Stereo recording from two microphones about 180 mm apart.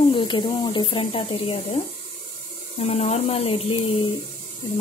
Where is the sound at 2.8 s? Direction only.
35° left (ahead or behind).